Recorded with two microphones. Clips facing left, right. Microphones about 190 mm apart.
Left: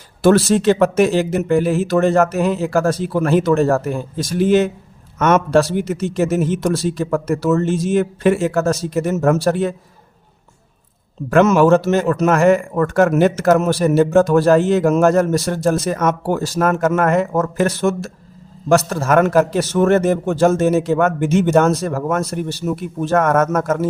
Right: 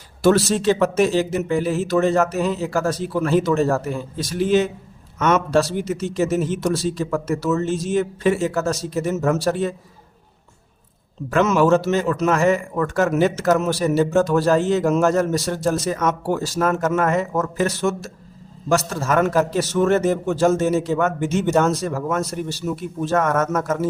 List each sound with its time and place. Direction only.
0.2 s a man's voice: 50° left (ahead or behind)
11.3 s a man's voice: 55° left (ahead or behind)